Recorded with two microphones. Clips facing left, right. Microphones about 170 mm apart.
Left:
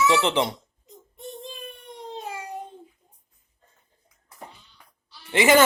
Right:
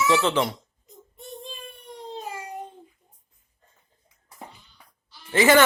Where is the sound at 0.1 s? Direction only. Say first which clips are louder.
Even; 20° left (ahead or behind).